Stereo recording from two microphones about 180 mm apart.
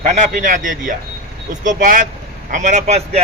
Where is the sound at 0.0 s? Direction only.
45° right (ahead or behind).